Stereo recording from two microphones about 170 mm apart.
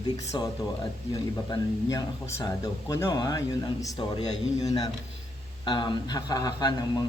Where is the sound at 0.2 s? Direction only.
20° left (ahead or behind).